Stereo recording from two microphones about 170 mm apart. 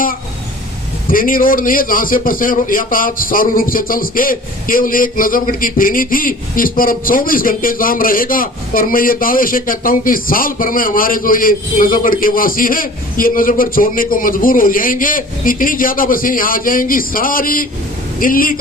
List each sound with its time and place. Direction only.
1.0 s a man's voice: 55° left (ahead or behind)